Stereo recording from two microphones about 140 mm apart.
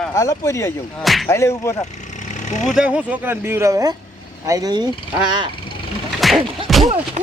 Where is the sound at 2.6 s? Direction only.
5° right (ahead or behind); by 4.8 s 30° right (ahead or behind).